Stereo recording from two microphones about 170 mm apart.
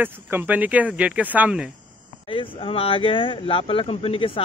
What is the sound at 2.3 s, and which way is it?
Speech, 30° left (ahead or behind).